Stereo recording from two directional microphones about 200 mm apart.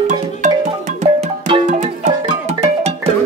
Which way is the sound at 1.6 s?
40° right (ahead or behind).